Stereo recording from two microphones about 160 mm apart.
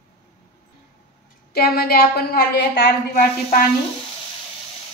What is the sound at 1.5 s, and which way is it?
A woman's voice, 75° left (ahead or behind).